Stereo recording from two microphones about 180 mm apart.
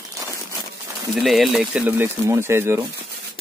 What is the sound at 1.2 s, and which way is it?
Speech, centre (ahead or behind).